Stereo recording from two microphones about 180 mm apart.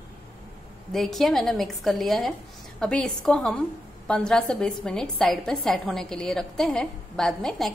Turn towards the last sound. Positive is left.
turn(degrees=0)  # may be behind; listen again after turning